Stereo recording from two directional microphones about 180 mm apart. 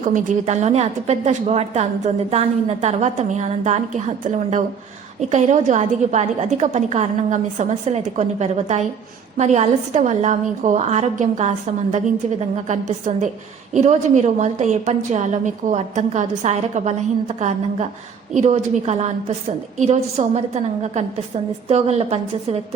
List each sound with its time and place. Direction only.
0.0 s a woman's voice: 45° right (ahead or behind)